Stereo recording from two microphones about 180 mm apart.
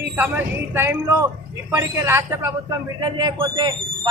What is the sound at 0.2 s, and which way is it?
A man's voice, 10° right (ahead or behind).